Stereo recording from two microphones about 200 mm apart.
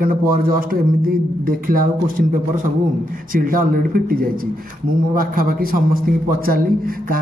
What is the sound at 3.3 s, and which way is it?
A man's voice, 45° right (ahead or behind).